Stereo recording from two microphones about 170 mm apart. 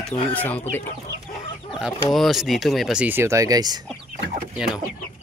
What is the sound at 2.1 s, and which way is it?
Speech, centre (ahead or behind).